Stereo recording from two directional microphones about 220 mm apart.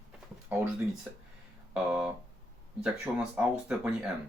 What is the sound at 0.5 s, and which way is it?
Speech, 10° right (ahead or behind).